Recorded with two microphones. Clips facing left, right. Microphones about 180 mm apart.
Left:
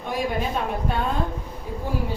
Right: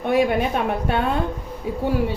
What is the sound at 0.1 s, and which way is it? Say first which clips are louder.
A woman's voice: right 6 dB; 65° right (ahead or behind).